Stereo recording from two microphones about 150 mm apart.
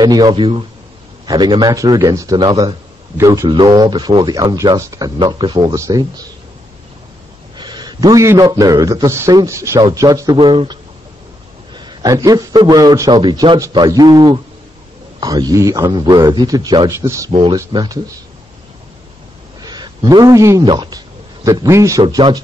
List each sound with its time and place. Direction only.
0.0 s a man's voice: 25° right (ahead or behind)
7.5 s a man's voice: 30° right (ahead or behind)
17.3 s speech: 35° right (ahead or behind)
17.6 s a man's voice: 25° right (ahead or behind)
19.6 s a sound: 30° right (ahead or behind)
20.6 s speech: 30° right (ahead or behind)
21.5 s a man's voice: 20° right (ahead or behind)